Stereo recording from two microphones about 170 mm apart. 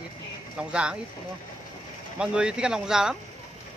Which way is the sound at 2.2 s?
5° right (ahead or behind).